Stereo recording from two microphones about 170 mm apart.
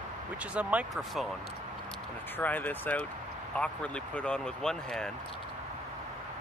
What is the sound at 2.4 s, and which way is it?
Speech, 10° left (ahead or behind).